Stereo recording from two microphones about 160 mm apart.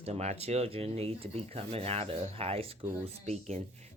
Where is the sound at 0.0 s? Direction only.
40° right (ahead or behind).